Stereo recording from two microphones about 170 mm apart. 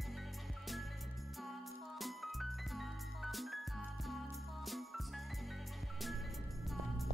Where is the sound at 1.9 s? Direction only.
Centre (ahead or behind).